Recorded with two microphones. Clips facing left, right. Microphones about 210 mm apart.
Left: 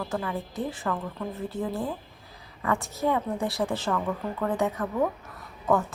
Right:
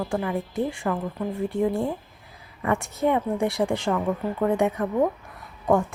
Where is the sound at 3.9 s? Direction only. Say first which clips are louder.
Right 4 dB; 25° right (ahead or behind).